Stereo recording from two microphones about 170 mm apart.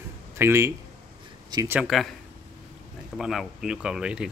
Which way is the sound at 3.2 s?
Centre (ahead or behind).